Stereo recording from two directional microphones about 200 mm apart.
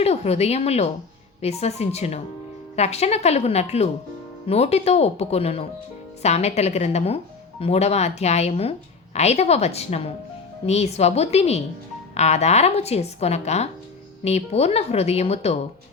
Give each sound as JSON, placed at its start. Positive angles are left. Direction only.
{"t": 0.0, "sound": "speech", "side_deg": 30}